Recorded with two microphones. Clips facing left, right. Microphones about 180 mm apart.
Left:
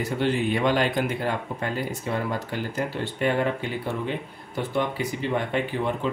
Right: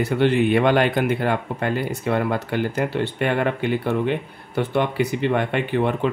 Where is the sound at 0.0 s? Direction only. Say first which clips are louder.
Right 6 dB; 65° right (ahead or behind).